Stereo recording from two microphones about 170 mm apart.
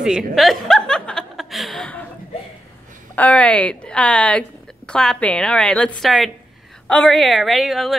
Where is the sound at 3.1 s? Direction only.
10° left (ahead or behind).